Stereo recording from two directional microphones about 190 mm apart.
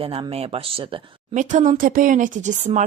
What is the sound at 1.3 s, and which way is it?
Speech, 40° right (ahead or behind).